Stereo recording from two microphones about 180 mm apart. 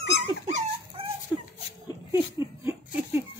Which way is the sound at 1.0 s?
30° right (ahead or behind).